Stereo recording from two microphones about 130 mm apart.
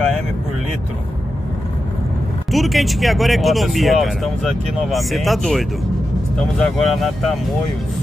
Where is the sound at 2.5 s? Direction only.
Centre (ahead or behind).